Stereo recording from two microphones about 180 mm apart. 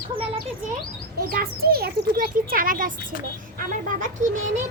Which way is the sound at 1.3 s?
55° right (ahead or behind).